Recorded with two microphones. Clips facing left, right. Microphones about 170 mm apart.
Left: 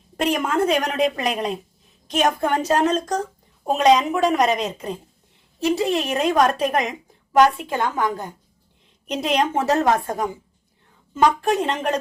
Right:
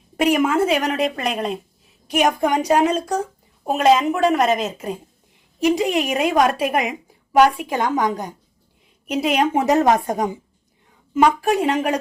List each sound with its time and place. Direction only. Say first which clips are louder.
0.2 s a woman's voice: right 4 dB; 5° right (ahead or behind)
2.0 s a woman's voice: right 2 dB; 10° right (ahead or behind)
5.5 s a woman's voice: right 2 dB; 15° right (ahead or behind)
9.0 s a woman's voice: right 2 dB; 5° right (ahead or behind)